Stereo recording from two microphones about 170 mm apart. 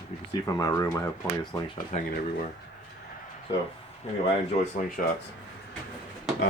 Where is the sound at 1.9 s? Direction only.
40° left (ahead or behind).